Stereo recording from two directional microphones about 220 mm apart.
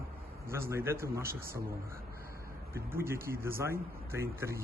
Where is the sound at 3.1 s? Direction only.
40° right (ahead or behind).